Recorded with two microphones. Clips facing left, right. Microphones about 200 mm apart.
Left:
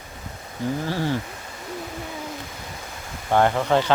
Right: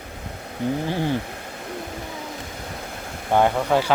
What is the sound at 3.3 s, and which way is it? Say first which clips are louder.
Speech: even; 10° right (ahead or behind).